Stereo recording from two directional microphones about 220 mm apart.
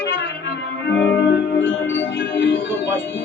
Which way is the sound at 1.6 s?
60° left (ahead or behind).